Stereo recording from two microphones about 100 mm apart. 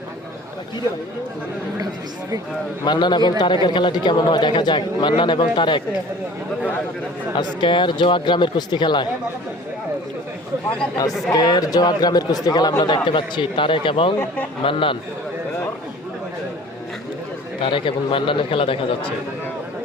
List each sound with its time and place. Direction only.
2.8 s a man's voice: 50° left (ahead or behind)
7.3 s a man's voice: 55° left (ahead or behind)
11.3 s a man's voice: 40° left (ahead or behind); by 14.9 s 60° left (ahead or behind)
17.6 s a man's voice: 60° left (ahead or behind)